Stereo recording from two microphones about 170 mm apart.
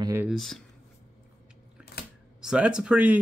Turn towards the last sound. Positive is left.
turn(degrees=-5)  # may be behind; listen again after turning